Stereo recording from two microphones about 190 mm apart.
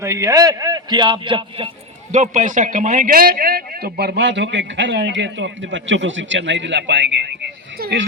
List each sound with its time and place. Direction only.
0.0 s a man's voice: 15° right (ahead or behind)
2.1 s a man's voice: 40° right (ahead or behind); by 7.3 s 65° right (ahead or behind)
7.8 s a sound: 60° right (ahead or behind)